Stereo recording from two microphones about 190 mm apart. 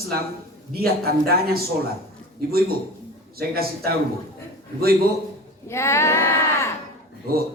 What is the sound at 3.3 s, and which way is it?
Speech, 55° right (ahead or behind).